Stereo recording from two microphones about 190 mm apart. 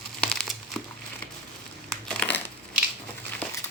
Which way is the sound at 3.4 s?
10° left (ahead or behind).